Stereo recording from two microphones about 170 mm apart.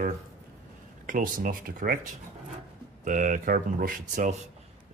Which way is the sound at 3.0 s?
50° right (ahead or behind).